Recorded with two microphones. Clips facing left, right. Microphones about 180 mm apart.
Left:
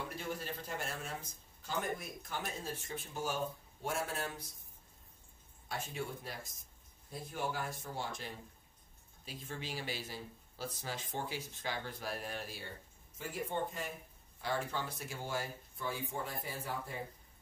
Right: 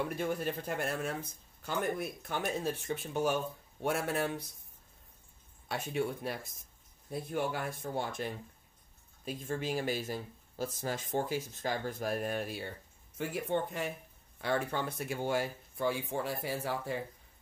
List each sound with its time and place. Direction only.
0.0 s speech: 55° right (ahead or behind)
5.7 s speech: 65° right (ahead or behind)
13.2 s speech: 70° right (ahead or behind)